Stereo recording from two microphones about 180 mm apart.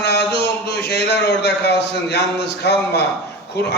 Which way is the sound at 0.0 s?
70° left (ahead or behind).